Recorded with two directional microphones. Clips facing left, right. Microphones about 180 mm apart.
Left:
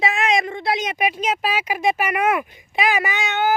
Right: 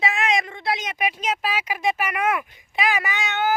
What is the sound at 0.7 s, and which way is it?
Speech, 15° left (ahead or behind).